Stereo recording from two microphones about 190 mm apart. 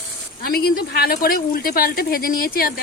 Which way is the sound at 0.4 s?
55° left (ahead or behind).